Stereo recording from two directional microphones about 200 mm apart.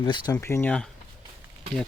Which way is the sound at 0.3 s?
10° left (ahead or behind).